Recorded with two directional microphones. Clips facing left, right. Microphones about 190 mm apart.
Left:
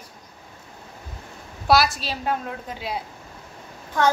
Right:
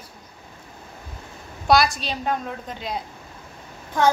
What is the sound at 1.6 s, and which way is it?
A woman's voice, 5° left (ahead or behind).